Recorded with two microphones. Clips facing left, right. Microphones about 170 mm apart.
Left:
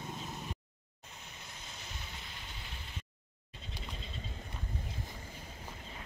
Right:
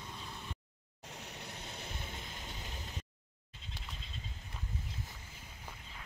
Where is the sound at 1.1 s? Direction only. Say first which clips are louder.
Right 5 dB; 75° right (ahead or behind); by 2.8 s 45° right (ahead or behind).